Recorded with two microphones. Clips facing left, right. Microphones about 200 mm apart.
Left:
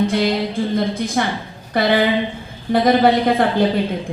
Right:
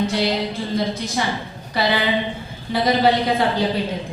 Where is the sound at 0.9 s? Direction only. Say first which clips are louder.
Left 3 dB; 55° left (ahead or behind).